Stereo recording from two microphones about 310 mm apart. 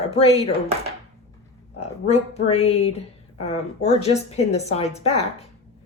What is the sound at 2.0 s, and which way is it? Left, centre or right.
Speech, centre.